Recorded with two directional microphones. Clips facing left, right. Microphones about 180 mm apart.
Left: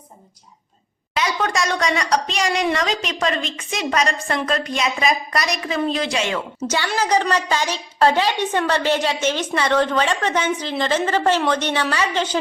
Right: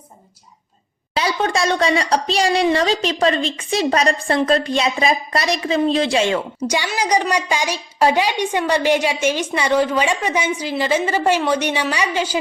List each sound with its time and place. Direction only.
1.1 s a woman's voice: 30° right (ahead or behind)
6.7 s a woman's voice: 15° right (ahead or behind)